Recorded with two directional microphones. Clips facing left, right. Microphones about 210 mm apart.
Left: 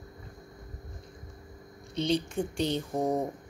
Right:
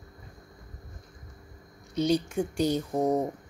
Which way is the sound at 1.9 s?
25° left (ahead or behind).